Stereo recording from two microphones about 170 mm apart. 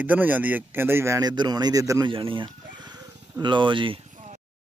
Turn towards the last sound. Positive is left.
turn(degrees=-45)  # may be behind; listen again after turning